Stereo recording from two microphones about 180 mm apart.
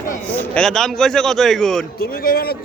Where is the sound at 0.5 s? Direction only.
5° left (ahead or behind).